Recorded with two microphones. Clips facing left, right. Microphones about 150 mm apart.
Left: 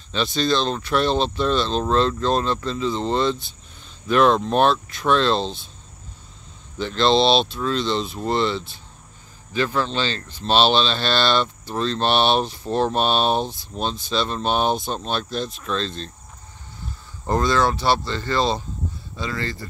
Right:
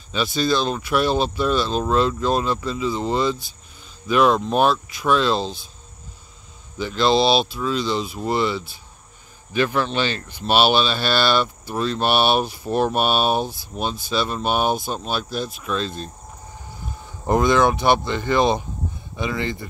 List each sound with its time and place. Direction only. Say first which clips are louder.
0.1 s speech: even; 5° right (ahead or behind)
6.8 s speech: even; 5° right (ahead or behind)
17.3 s speech: right 3 dB; 15° right (ahead or behind)